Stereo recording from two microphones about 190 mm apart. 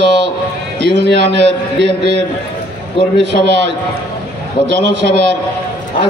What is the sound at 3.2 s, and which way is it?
Speech, 70° right (ahead or behind).